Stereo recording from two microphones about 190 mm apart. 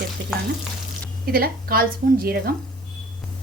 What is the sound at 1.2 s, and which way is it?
Speech, 50° right (ahead or behind).